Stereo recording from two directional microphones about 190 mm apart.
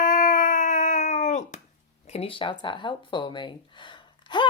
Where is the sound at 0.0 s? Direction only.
40° left (ahead or behind).